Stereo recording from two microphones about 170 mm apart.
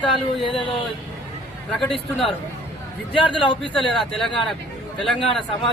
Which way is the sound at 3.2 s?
30° left (ahead or behind).